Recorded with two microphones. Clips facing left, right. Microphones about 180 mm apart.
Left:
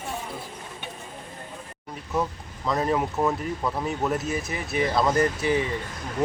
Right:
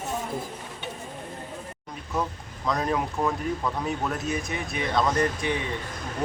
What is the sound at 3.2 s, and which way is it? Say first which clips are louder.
Speech: left 1 dB; 10° left (ahead or behind).